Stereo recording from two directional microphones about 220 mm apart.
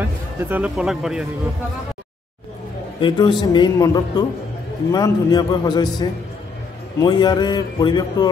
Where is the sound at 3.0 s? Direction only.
20° left (ahead or behind).